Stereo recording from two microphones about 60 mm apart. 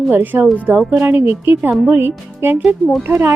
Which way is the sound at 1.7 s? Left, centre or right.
Centre.